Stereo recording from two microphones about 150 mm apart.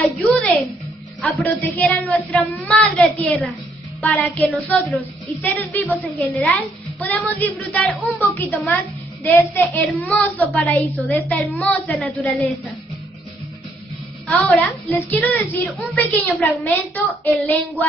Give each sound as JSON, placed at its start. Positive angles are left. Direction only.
{"t": 0.2, "sound": "music", "side_deg": 0}
{"t": 1.2, "sound": "a child's voice", "side_deg": 10}
{"t": 14.2, "sound": "a child's voice", "side_deg": 10}